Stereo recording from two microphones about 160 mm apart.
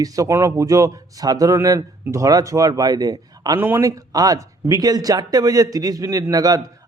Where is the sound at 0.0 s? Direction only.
20° right (ahead or behind).